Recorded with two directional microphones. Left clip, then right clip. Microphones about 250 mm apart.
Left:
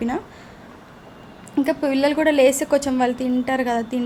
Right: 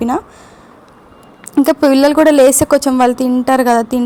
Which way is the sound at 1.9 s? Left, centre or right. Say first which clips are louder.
Right 9 dB; right.